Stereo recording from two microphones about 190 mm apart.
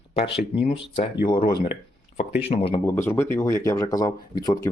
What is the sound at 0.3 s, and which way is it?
Speech, 30° left (ahead or behind).